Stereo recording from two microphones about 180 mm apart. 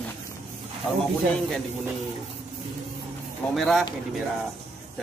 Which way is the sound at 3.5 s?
Centre (ahead or behind).